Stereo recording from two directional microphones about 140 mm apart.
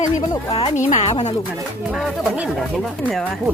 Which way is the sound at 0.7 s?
55° left (ahead or behind).